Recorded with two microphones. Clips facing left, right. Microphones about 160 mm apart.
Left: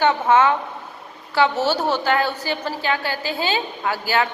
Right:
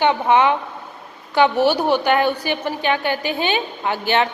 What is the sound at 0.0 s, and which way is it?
A woman's voice, 15° right (ahead or behind).